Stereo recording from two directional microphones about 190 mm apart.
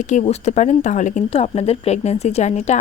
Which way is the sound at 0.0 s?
40° left (ahead or behind).